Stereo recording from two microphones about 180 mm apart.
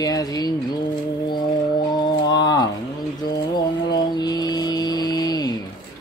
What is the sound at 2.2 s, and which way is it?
Speech, 20° left (ahead or behind).